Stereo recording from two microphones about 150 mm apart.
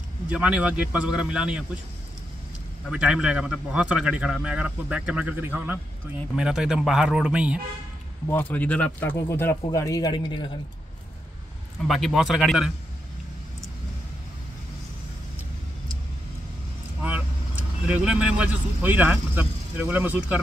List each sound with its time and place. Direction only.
0.3 s speech: 10° right (ahead or behind)
2.9 s speech: 5° right (ahead or behind)
8.3 s speech: 10° left (ahead or behind); by 10.5 s 30° left (ahead or behind)
11.9 s speech: centre (ahead or behind)
17.0 s speech: 10° right (ahead or behind)